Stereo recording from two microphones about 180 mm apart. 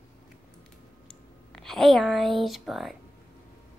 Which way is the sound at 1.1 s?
5° left (ahead or behind).